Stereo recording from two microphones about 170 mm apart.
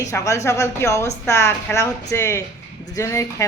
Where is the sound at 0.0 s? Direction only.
15° left (ahead or behind).